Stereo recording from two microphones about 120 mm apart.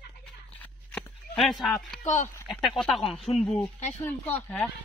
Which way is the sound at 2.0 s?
90° left.